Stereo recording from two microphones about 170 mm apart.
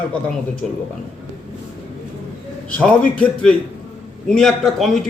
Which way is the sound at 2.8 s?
5° left (ahead or behind).